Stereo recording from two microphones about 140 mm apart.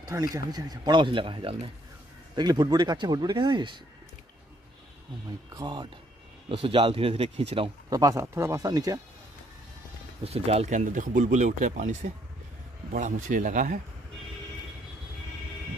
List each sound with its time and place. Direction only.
0.1 s speech: 25° right (ahead or behind)
5.5 s speech: 30° right (ahead or behind)
7.9 s speech: 25° right (ahead or behind)
10.2 s speech: 45° right (ahead or behind)
10.9 s speech: 65° right (ahead or behind)